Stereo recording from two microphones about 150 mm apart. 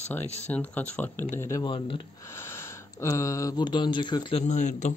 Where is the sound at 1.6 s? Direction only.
35° left (ahead or behind).